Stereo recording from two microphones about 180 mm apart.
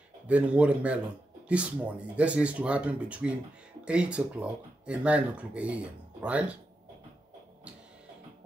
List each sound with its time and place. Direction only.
0.3 s speech: 5° right (ahead or behind)